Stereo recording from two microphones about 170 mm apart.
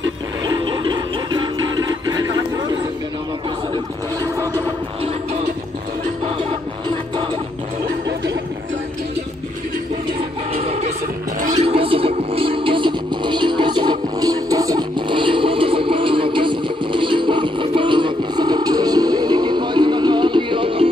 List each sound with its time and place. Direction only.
0.5 s music: 25° right (ahead or behind)
10.5 s music: 35° right (ahead or behind)